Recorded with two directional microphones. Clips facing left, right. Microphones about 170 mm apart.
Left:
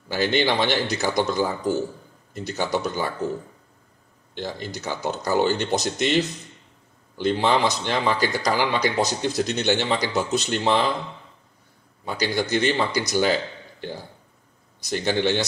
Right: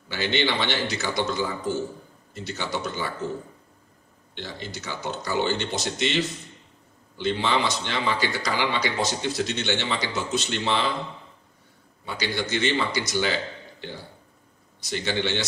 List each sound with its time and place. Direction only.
0.1 s speech: 40° left (ahead or behind)
4.4 s speech: 40° left (ahead or behind)
7.2 s speech: 45° left (ahead or behind)
12.0 s speech: 45° left (ahead or behind)
14.9 s speech: 45° left (ahead or behind)